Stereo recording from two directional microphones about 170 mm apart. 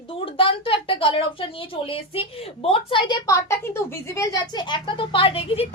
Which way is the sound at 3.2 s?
15° left (ahead or behind).